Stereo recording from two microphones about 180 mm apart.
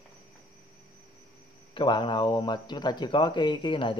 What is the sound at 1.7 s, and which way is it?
Speech, 25° left (ahead or behind).